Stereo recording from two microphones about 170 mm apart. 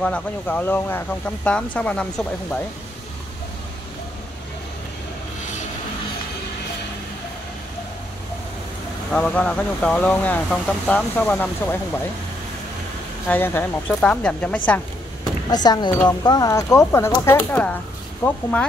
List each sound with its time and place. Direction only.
0.0 s speech: 10° left (ahead or behind)
9.1 s speech: 5° left (ahead or behind)
13.3 s speech: 15° left (ahead or behind)
15.5 s speech: 25° left (ahead or behind); by 18.7 s 5° left (ahead or behind)